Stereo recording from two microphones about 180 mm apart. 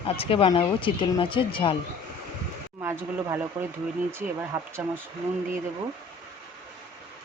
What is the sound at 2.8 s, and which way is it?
Speech, 10° right (ahead or behind).